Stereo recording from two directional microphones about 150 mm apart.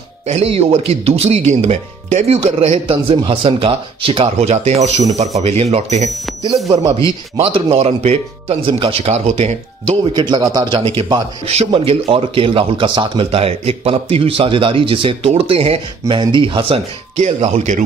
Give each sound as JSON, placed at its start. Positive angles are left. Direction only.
{"t": 0.3, "sound": "speech", "side_deg": -45}
{"t": 6.7, "sound": "speech", "side_deg": -25}
{"t": 7.3, "sound": "speech", "side_deg": -40}
{"t": 10.1, "sound": "speech", "side_deg": -30}